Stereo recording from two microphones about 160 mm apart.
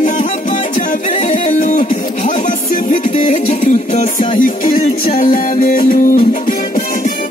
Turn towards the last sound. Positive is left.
turn(degrees=60)  # may be behind; listen again after turning